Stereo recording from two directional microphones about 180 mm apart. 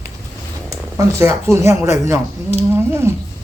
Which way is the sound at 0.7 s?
15° right (ahead or behind).